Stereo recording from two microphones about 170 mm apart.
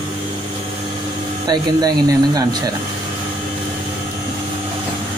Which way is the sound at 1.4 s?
25° right (ahead or behind).